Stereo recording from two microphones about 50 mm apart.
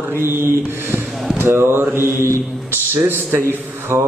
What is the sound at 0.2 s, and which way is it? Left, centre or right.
A man's voice, right.